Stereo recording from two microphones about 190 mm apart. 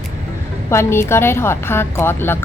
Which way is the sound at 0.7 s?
15° left (ahead or behind).